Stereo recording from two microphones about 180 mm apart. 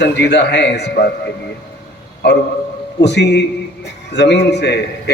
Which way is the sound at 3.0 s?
70° left (ahead or behind).